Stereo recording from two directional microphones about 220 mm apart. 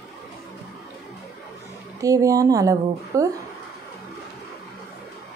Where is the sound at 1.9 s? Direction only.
15° right (ahead or behind).